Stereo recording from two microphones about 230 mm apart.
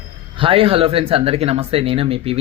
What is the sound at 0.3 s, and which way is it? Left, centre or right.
Speech, right.